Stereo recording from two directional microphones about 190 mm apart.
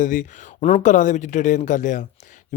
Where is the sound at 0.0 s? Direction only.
45° left (ahead or behind).